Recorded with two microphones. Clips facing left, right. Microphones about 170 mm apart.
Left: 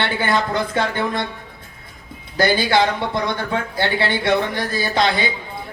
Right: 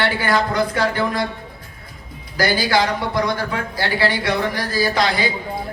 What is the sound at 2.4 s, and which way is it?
A man's voice, 25° left (ahead or behind).